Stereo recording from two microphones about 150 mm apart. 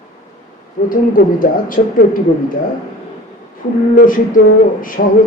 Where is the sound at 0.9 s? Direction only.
65° left (ahead or behind).